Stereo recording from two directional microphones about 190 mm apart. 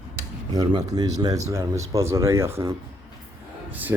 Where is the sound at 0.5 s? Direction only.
20° right (ahead or behind).